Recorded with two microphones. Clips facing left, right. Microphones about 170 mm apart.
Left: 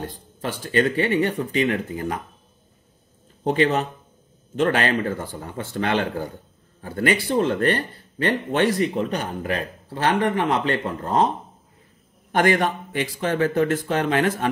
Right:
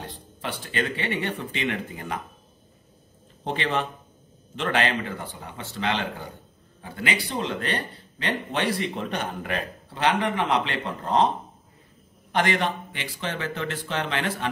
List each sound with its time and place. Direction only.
0.0 s speech: 45° left (ahead or behind)
3.4 s speech: 40° left (ahead or behind)
12.3 s speech: 50° left (ahead or behind)